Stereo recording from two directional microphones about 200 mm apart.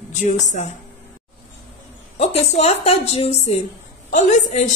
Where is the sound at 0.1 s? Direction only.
35° left (ahead or behind).